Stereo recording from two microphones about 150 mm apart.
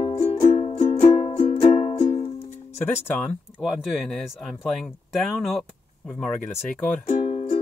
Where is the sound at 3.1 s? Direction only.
10° left (ahead or behind).